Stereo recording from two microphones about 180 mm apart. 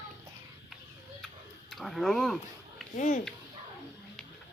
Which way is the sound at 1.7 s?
Centre (ahead or behind).